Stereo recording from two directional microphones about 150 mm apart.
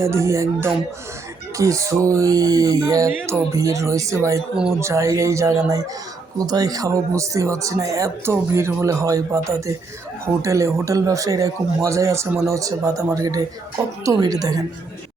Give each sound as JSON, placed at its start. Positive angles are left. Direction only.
{"t": 0.0, "sound": "a man's voice", "side_deg": -20}